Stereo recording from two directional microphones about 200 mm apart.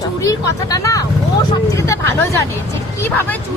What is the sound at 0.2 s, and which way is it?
Speech, 15° left (ahead or behind).